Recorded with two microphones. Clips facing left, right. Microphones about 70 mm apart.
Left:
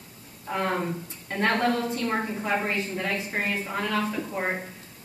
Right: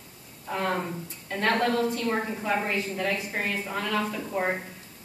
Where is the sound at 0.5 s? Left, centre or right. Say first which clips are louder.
Left 1 dB; centre.